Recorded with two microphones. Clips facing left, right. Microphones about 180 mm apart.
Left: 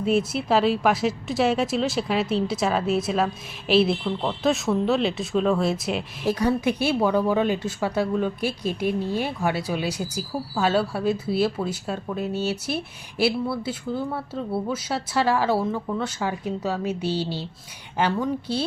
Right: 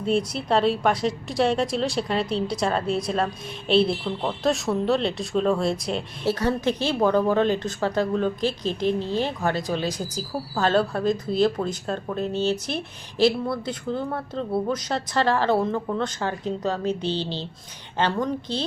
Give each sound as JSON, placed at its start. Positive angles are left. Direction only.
{"t": 0.0, "sound": "a woman's voice", "side_deg": 5}